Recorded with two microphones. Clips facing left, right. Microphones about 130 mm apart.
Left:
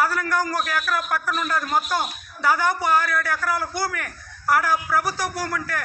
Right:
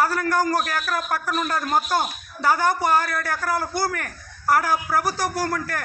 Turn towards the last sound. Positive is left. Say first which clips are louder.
# right 2 dB
turn(degrees=-40)  # may be behind; listen again after turning